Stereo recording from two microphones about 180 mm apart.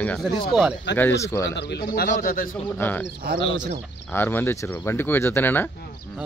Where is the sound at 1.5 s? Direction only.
70° left (ahead or behind); by 2.5 s 50° left (ahead or behind).